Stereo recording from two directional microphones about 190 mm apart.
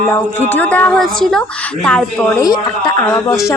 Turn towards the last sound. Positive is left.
turn(degrees=15)  # may be behind; listen again after turning